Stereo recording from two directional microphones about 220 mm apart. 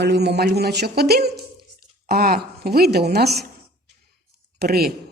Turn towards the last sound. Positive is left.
turn(degrees=-45)  # may be behind; listen again after turning